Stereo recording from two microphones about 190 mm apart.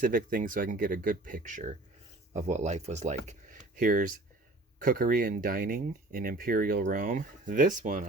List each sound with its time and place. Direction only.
0.0 s speech: 45° right (ahead or behind)